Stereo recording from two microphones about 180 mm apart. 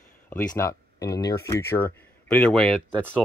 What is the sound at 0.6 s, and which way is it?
Speech, 15° left (ahead or behind).